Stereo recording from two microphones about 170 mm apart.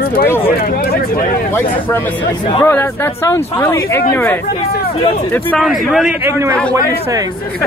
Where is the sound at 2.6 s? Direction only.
15° left (ahead or behind).